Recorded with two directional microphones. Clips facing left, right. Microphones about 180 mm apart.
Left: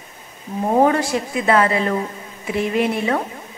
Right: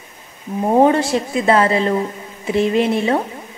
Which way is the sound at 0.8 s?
25° right (ahead or behind).